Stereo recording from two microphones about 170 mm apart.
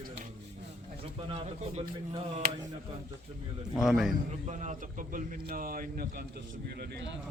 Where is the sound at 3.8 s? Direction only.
5° right (ahead or behind).